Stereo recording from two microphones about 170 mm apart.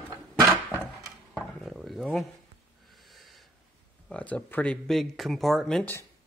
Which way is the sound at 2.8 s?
Centre (ahead or behind).